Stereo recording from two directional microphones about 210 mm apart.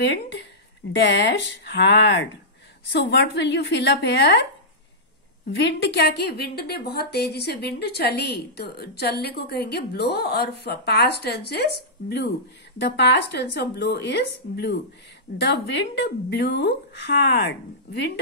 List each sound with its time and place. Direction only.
0.0 s speech: 55° left (ahead or behind)
5.6 s a woman's voice: 55° left (ahead or behind)